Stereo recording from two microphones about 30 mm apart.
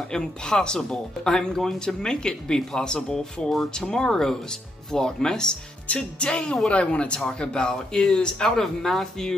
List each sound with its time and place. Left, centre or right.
0.1 s speech: left
2.0 s speech: left
5.9 s music: left
7.3 s speech: left
8.5 s speech: centre